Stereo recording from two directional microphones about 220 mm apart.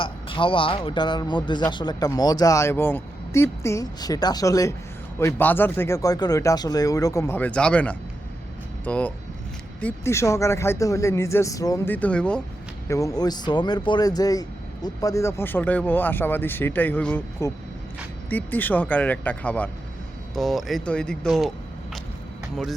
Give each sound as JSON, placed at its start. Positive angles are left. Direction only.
{"t": 0.0, "sound": "a man's voice", "side_deg": 25}